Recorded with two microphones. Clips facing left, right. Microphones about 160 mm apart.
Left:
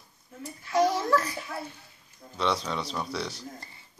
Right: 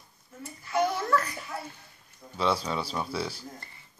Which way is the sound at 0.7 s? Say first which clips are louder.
Left 2 dB; 35° left (ahead or behind).